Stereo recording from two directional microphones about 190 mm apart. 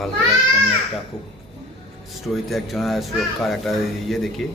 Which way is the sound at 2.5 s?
Centre (ahead or behind).